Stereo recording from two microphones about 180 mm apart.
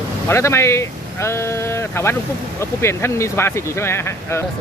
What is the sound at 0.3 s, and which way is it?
Speech, 15° left (ahead or behind).